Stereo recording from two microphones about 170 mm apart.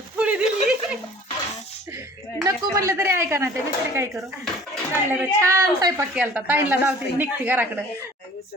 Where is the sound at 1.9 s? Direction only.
15° right (ahead or behind).